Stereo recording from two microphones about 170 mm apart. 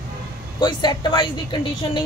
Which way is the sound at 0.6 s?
25° left (ahead or behind).